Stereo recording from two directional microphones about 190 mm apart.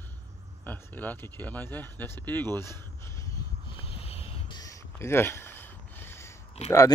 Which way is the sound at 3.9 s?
30° left (ahead or behind).